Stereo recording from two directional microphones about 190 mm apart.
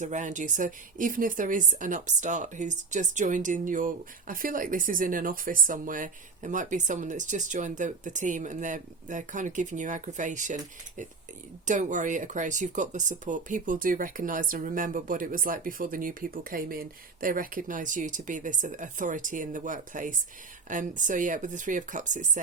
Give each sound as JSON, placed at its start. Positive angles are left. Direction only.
{"t": 0.0, "sound": "a woman's voice", "side_deg": -40}